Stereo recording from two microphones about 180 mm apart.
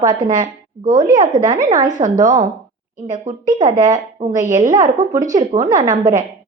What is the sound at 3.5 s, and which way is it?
A woman's voice, 20° right (ahead or behind).